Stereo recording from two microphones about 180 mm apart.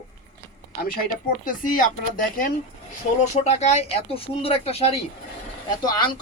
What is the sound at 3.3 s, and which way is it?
Speech, 35° left (ahead or behind).